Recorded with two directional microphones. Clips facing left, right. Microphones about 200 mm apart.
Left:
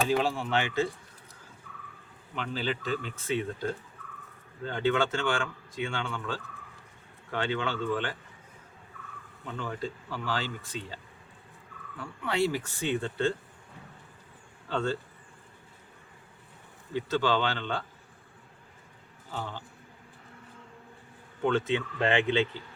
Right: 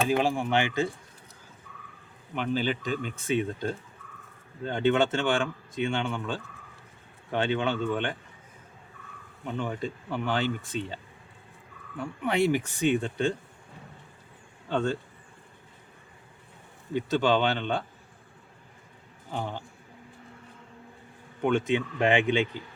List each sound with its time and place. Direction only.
0.2 s speech: 15° right (ahead or behind)
2.3 s speech: 15° right (ahead or behind)
9.5 s speech: 20° right (ahead or behind)
14.7 s speech: 15° right (ahead or behind)
16.9 s speech: 15° right (ahead or behind)
19.4 s speech: 15° right (ahead or behind)
21.7 s speech: 15° right (ahead or behind)